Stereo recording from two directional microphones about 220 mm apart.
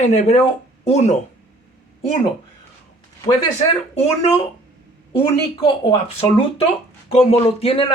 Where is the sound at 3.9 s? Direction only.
30° left (ahead or behind).